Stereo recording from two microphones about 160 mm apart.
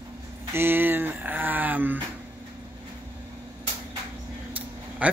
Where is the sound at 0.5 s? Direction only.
15° right (ahead or behind).